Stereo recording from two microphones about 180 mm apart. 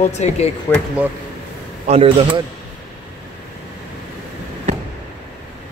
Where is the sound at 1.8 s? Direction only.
35° right (ahead or behind).